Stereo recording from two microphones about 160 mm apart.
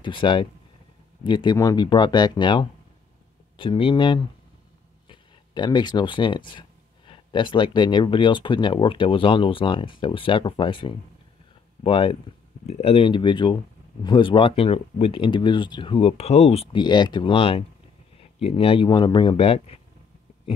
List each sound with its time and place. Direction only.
0.0 s speech: 30° left (ahead or behind)
16.7 s speech: 30° left (ahead or behind)